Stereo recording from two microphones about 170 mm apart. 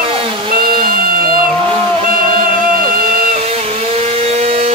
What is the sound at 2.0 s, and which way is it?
Vehicle, 55° right (ahead or behind).